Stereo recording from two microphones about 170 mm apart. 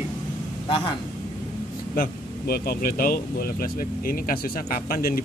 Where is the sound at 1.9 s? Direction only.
60° left (ahead or behind).